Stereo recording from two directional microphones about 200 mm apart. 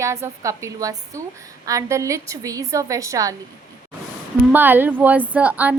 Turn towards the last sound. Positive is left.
turn(degrees=-10)  # may be behind; listen again after turning